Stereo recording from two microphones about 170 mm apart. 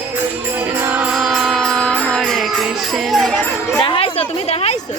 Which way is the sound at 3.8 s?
35° left (ahead or behind).